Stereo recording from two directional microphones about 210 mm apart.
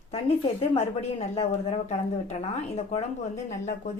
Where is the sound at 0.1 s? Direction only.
30° left (ahead or behind).